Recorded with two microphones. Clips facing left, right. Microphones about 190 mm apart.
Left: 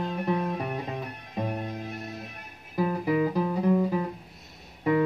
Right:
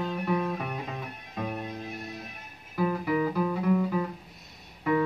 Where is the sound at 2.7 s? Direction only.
30° left (ahead or behind).